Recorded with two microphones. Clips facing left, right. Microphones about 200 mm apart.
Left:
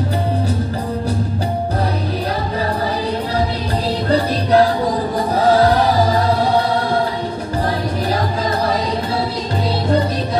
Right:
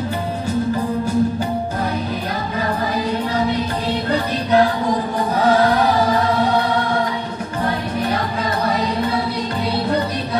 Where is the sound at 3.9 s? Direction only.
35° left (ahead or behind).